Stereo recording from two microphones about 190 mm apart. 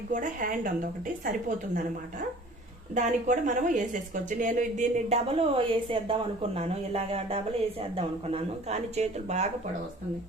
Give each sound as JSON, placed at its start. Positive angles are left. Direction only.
{"t": 0.1, "sound": "a woman's voice", "side_deg": -45}
{"t": 2.9, "sound": "a woman's voice", "side_deg": -40}